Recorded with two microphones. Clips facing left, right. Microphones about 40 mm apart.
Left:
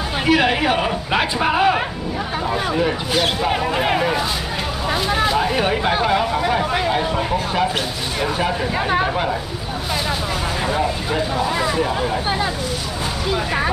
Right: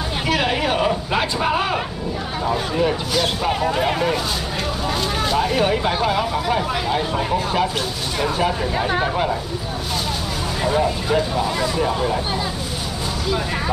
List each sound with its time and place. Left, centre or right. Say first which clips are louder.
0.3 s speech: left 4 dB; centre
8.2 s speech: even; centre
10.6 s speech: right 4 dB; centre
11.5 s speech: left 2 dB; left
11.8 s speech: even; centre